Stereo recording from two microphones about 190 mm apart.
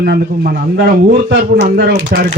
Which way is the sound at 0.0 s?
55° right (ahead or behind).